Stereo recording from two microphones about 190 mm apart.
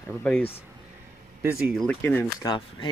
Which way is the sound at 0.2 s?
10° left (ahead or behind).